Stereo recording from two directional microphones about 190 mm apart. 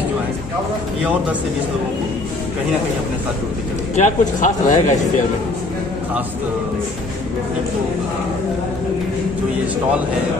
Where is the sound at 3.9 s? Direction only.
40° left (ahead or behind).